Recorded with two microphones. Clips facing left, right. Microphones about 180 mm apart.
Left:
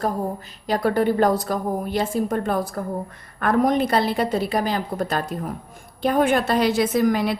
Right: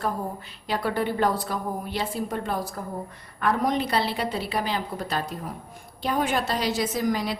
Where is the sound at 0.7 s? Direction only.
45° left (ahead or behind).